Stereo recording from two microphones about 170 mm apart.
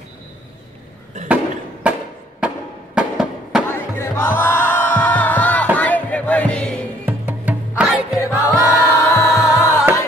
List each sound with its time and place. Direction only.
1.3 s a sound: 10° right (ahead or behind)
3.6 s music: 15° left (ahead or behind)
7.1 s music: 10° right (ahead or behind)
8.2 s music: 20° left (ahead or behind)